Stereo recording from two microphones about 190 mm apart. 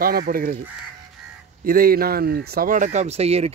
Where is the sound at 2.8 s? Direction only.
35° right (ahead or behind).